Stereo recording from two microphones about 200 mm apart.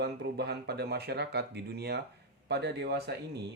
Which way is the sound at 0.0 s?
55° right (ahead or behind).